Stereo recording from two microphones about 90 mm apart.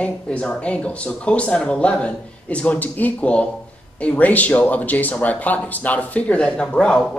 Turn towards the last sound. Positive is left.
turn(degrees=10)  # may be behind; listen again after turning